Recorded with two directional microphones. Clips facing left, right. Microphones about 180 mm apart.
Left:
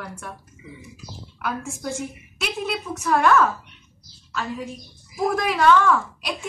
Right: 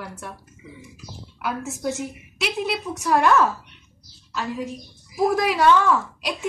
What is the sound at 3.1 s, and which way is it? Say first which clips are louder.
Speech: even; 15° right (ahead or behind).